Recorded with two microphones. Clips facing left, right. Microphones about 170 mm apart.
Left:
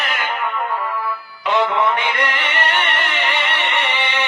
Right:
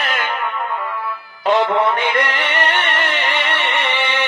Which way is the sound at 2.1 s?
45° right (ahead or behind).